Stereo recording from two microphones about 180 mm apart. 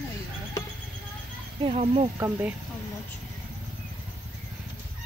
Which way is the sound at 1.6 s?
30° right (ahead or behind).